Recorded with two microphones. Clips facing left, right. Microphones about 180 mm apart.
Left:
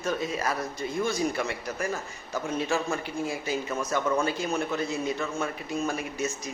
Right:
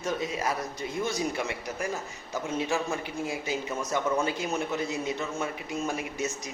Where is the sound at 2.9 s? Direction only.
15° right (ahead or behind).